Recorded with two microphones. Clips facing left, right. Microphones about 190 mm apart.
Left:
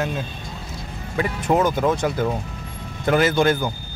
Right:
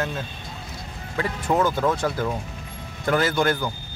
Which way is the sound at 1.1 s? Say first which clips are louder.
Left 3 dB; 15° left (ahead or behind).